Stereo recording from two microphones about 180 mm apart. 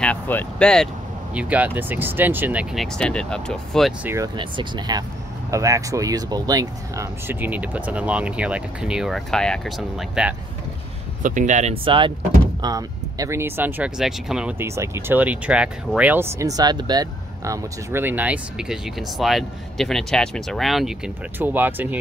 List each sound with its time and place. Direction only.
0.0 s speech: 10° left (ahead or behind)
1.3 s speech: 5° right (ahead or behind)
4.0 s speech: 15° right (ahead or behind)
4.4 s speech: 25° right (ahead or behind); by 10.3 s 5° right (ahead or behind)
11.2 s speech: 45° right (ahead or behind); by 21.8 s 10° right (ahead or behind)